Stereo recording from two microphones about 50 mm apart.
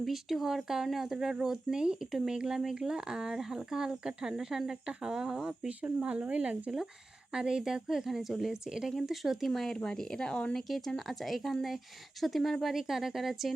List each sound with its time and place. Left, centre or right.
0.0 s speech: centre
5.6 s speech: right
7.3 s speech: centre
9.5 s speech: centre
10.7 s speech: centre